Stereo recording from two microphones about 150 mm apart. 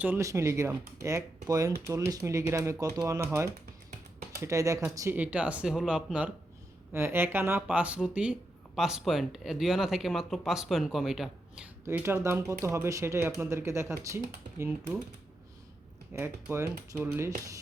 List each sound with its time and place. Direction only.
0.0 s speech: 15° right (ahead or behind)
11.9 s speech: 15° right (ahead or behind)
16.1 s speech: 15° right (ahead or behind)